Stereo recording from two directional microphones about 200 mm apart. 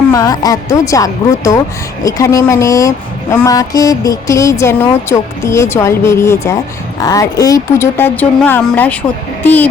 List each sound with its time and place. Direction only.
0.1 s a woman's voice: 20° left (ahead or behind)